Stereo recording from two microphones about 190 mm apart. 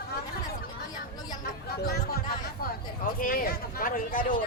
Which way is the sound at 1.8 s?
55° left (ahead or behind).